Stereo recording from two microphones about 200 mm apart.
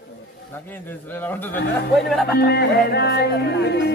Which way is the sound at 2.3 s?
55° left (ahead or behind).